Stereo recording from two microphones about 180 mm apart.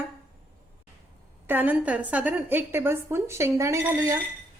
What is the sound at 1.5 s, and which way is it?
A woman's voice, 10° right (ahead or behind).